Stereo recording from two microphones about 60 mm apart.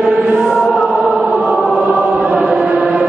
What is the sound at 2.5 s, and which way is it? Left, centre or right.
Chant, right.